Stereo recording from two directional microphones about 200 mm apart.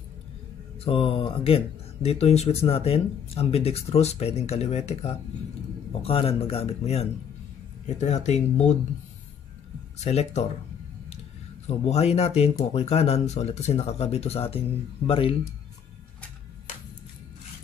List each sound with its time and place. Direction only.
0.8 s speech: 25° left (ahead or behind)
9.9 s speech: 35° left (ahead or behind)
11.6 s speech: 30° left (ahead or behind)